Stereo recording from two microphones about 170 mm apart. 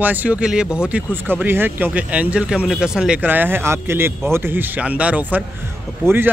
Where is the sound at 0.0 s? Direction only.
10° right (ahead or behind).